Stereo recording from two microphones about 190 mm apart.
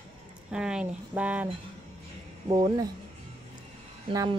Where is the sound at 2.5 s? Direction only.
20° right (ahead or behind).